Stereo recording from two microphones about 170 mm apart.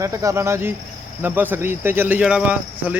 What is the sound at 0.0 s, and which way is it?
Speech, 15° right (ahead or behind).